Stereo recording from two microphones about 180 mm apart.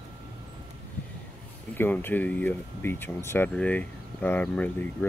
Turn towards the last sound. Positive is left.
turn(degrees=10)  # may be behind; listen again after turning